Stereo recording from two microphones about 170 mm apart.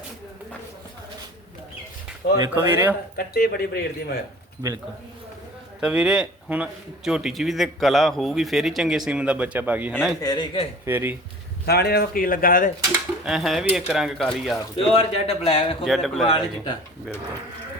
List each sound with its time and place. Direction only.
2.3 s speech: 20° right (ahead or behind)
3.2 s speech: 65° left (ahead or behind)
5.8 s a man's voice: 5° right (ahead or behind)
10.2 s speech: 25° left (ahead or behind)
10.8 s speech: 10° right (ahead or behind)
11.6 s speech: 70° left (ahead or behind)
13.2 s a man's voice: centre (ahead or behind)
14.8 s a man's voice: 35° left (ahead or behind)